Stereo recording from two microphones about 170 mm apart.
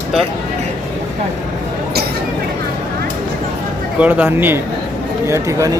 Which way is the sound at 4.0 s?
10° right (ahead or behind).